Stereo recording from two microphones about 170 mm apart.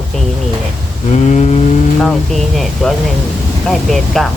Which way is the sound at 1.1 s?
45° left (ahead or behind).